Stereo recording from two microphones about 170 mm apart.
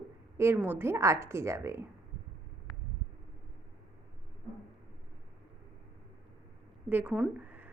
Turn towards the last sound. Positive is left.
turn(degrees=-10)  # may be behind; listen again after turning